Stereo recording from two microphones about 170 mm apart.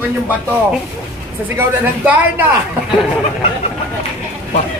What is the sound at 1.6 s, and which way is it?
Speech, 10° right (ahead or behind).